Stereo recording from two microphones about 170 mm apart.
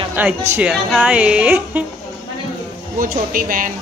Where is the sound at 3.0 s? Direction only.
55° right (ahead or behind).